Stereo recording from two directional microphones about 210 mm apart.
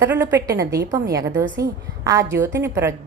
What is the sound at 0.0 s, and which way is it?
A woman's voice, 10° right (ahead or behind).